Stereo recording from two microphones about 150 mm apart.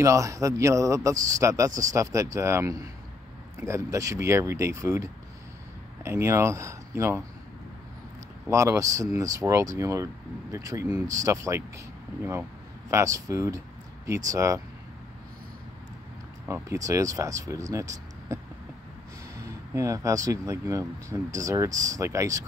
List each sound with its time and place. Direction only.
0.0 s speech: 20° right (ahead or behind)
8.5 s speech: 20° right (ahead or behind)
12.9 s speech: 20° right (ahead or behind)
16.4 s speech: 20° right (ahead or behind)
19.7 s speech: 20° right (ahead or behind)